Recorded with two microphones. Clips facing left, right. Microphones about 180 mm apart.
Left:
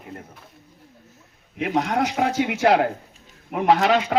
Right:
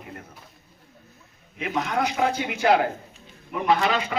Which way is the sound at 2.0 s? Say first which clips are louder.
Left 2 dB; 70° left (ahead or behind).